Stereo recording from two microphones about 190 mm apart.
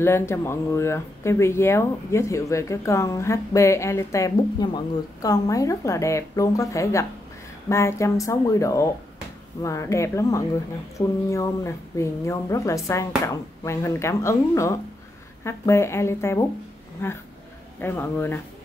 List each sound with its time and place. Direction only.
0.0 s speech: 15° left (ahead or behind)